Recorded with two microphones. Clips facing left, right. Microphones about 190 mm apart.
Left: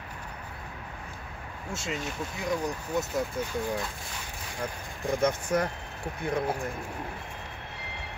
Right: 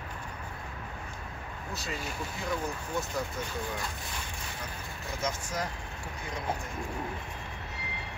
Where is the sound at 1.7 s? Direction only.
25° left (ahead or behind).